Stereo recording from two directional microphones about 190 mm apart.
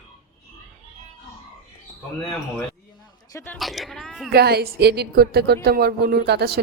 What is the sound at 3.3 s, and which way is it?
Speech, 15° left (ahead or behind).